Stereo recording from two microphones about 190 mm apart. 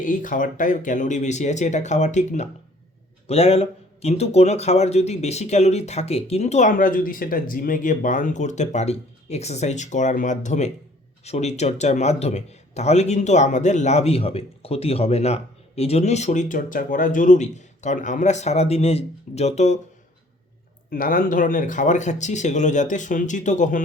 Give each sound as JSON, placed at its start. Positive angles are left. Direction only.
{"t": 0.0, "sound": "a man's voice", "side_deg": 45}
{"t": 20.9, "sound": "a man's voice", "side_deg": 50}